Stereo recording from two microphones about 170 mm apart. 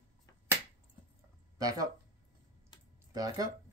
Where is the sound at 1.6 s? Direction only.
20° right (ahead or behind).